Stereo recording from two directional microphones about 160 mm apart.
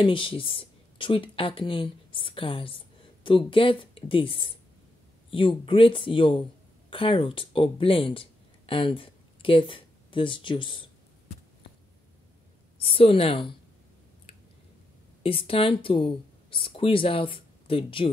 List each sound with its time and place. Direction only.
0.0 s speech: 30° left (ahead or behind)
12.7 s speech: 35° left (ahead or behind)
15.2 s speech: 35° left (ahead or behind)